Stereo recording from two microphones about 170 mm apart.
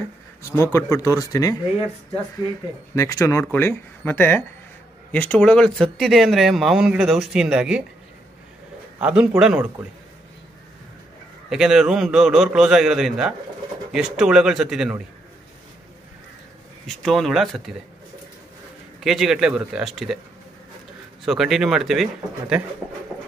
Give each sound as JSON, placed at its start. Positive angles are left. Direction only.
{"t": 0.7, "sound": "speech", "side_deg": 20}
{"t": 3.0, "sound": "speech", "side_deg": 20}
{"t": 9.0, "sound": "a man's voice", "side_deg": -10}
{"t": 11.4, "sound": "speech", "side_deg": -5}
{"t": 16.8, "sound": "speech", "side_deg": 0}
{"t": 18.9, "sound": "speech", "side_deg": 0}
{"t": 21.3, "sound": "speech", "side_deg": 0}